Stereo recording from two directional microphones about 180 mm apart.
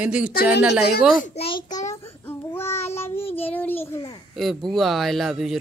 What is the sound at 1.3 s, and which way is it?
Speech, 35° left (ahead or behind).